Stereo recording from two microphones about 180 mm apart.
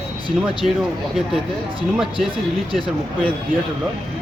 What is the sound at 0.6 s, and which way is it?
Speech, 45° right (ahead or behind).